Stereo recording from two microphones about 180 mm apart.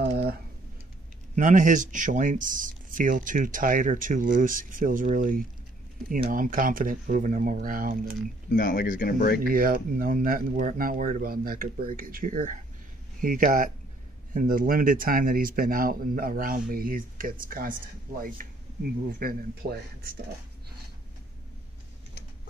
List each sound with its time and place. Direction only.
0.0 s a sound: 60° right (ahead or behind)
1.3 s speech: 45° right (ahead or behind)
8.5 s speech: 45° left (ahead or behind)
9.5 s speech: 50° right (ahead or behind)
19.1 s speech: 55° right (ahead or behind)